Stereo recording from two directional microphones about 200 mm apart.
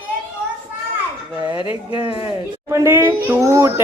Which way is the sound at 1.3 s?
10° right (ahead or behind).